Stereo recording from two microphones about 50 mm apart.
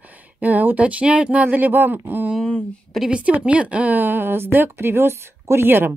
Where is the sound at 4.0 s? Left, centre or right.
Right.